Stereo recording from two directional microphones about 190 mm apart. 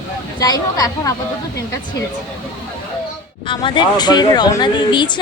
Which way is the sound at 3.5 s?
25° left (ahead or behind).